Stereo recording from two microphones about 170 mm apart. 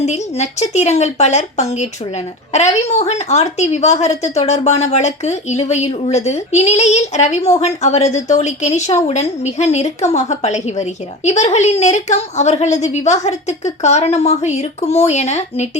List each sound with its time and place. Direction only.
0.0 s speech: 40° left (ahead or behind)